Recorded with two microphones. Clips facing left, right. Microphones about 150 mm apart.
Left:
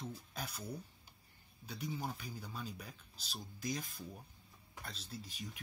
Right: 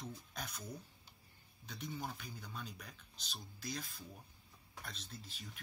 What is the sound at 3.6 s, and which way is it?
Speech, 15° left (ahead or behind).